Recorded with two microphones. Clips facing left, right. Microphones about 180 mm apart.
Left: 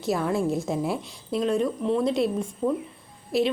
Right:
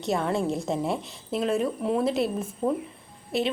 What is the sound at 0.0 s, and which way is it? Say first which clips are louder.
Speech: left 1 dB; centre (ahead or behind).